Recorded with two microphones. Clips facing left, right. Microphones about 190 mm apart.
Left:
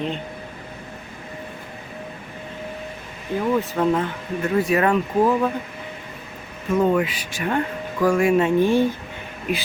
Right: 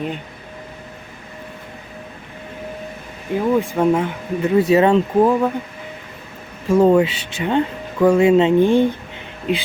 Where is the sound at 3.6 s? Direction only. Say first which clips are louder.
Right 4 dB; 15° right (ahead or behind).